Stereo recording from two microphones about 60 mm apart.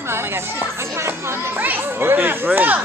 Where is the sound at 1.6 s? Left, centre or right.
Right.